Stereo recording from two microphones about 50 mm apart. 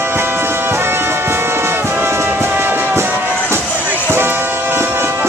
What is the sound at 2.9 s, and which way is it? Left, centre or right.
Music, right.